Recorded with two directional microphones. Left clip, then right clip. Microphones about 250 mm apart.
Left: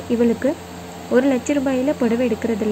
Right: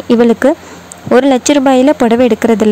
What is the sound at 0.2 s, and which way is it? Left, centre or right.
A woman's voice, right.